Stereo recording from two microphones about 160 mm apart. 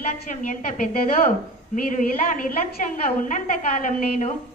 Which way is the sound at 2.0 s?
55° left (ahead or behind).